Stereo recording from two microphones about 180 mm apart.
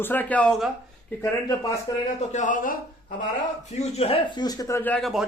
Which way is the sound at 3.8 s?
35° left (ahead or behind).